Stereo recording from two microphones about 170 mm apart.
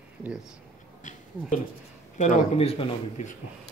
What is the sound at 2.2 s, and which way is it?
Speech, 40° left (ahead or behind).